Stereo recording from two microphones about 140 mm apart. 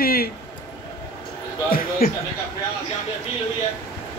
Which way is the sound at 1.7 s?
90° left.